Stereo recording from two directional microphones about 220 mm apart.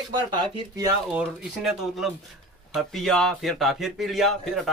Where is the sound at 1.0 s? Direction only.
5° right (ahead or behind).